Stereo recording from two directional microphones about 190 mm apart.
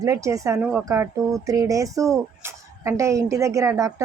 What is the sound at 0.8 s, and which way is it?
A woman's voice, 15° right (ahead or behind).